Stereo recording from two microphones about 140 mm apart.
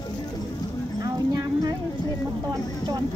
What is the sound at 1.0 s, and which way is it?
Speech, 30° right (ahead or behind).